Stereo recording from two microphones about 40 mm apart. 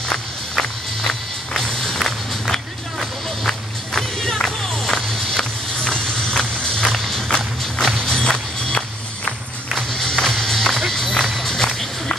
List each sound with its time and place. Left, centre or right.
0.6 s music: centre
5.4 s vehicle: centre
6.8 s music: centre
8.0 s music: left
9.8 s music: centre
11.1 s music: centre
11.4 s music: centre